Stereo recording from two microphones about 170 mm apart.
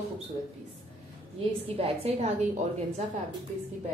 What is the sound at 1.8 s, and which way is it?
Speech, 40° right (ahead or behind).